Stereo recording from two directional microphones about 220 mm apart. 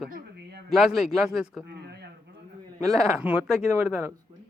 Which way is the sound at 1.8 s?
50° right (ahead or behind).